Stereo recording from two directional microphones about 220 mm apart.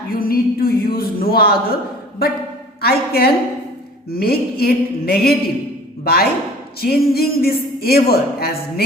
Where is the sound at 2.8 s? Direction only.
45° left (ahead or behind).